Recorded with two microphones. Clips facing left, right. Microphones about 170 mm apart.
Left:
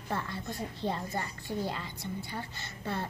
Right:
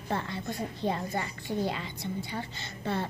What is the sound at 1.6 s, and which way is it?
Speech, 80° right.